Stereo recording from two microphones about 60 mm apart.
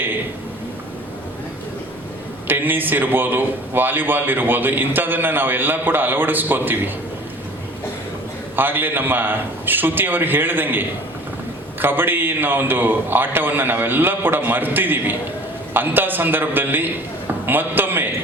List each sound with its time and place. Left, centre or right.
2.5 s a man's voice: right
8.5 s a man's voice: right